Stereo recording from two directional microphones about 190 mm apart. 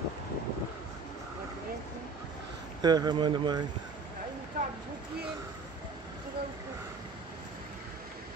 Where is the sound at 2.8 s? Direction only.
20° right (ahead or behind).